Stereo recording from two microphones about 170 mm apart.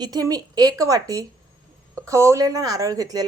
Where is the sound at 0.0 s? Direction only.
20° right (ahead or behind).